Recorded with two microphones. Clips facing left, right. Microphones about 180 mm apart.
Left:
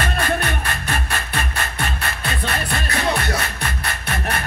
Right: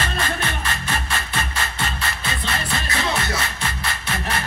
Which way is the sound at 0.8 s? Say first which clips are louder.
Left 1 dB; 60° left (ahead or behind).